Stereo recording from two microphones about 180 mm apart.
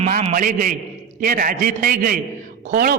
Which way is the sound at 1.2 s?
50° right (ahead or behind).